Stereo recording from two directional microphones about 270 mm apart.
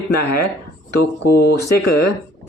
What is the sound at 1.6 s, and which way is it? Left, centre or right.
Speech, left.